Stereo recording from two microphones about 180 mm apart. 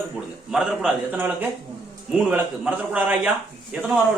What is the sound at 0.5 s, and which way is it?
Speech, 5° right (ahead or behind).